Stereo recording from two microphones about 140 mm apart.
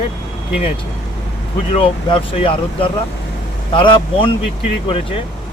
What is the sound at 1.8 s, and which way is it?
Speech, 40° left (ahead or behind).